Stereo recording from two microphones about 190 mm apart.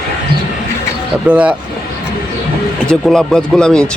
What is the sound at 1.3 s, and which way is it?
Speech, 5° right (ahead or behind).